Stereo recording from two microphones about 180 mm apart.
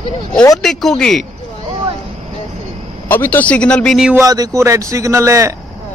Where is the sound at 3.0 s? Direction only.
10° left (ahead or behind).